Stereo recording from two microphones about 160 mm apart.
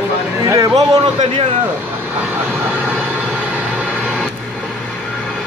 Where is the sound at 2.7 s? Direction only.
5° right (ahead or behind).